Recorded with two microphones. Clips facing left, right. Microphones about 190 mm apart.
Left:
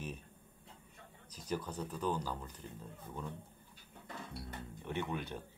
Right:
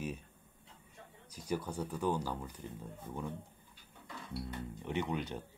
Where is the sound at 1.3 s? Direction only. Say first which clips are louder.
Right 2 dB; 10° right (ahead or behind).